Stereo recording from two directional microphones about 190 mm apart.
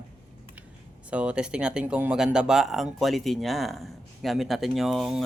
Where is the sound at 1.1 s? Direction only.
5° right (ahead or behind).